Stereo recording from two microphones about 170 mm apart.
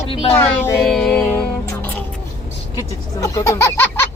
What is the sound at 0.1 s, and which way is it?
Speech, 30° left (ahead or behind).